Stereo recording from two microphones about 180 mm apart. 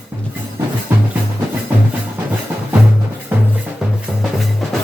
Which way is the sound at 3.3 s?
10° right (ahead or behind).